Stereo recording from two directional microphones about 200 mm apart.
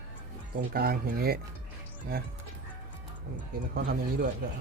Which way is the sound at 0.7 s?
50° right (ahead or behind).